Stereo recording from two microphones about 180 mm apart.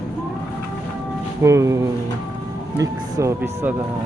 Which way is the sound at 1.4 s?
15° right (ahead or behind).